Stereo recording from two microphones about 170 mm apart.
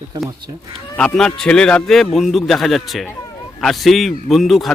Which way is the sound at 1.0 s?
5° left (ahead or behind).